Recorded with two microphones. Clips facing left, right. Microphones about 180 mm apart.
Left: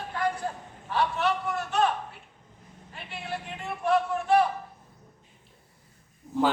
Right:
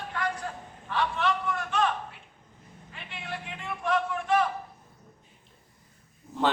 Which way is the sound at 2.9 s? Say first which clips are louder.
Left 3 dB; 40° left (ahead or behind).